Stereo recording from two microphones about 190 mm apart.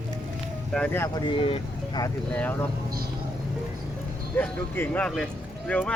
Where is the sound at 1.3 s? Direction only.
30° left (ahead or behind).